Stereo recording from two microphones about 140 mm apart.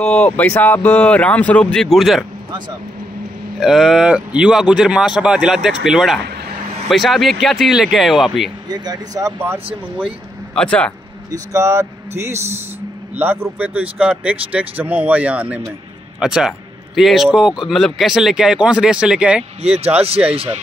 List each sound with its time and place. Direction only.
0.0 s speech: 5° left (ahead or behind)
3.5 s speech: centre (ahead or behind)
8.6 s speech: 30° right (ahead or behind)
10.5 s a man's voice: 5° left (ahead or behind)
11.3 s speech: 20° right (ahead or behind)
13.1 s speech: 15° right (ahead or behind)
19.6 s speech: 45° right (ahead or behind)